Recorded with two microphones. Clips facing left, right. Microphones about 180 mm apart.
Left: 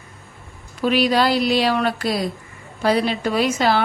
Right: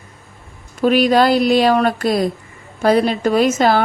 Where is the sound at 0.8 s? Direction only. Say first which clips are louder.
Right 5 dB; 45° right (ahead or behind).